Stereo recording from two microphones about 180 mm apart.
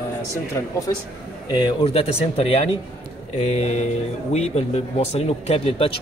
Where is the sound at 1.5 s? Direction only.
25° left (ahead or behind).